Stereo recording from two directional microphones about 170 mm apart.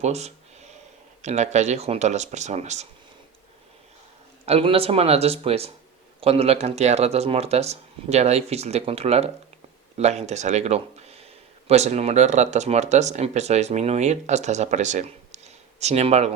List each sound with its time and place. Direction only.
0.0 s speech: 40° right (ahead or behind)
4.4 s speech: 35° right (ahead or behind)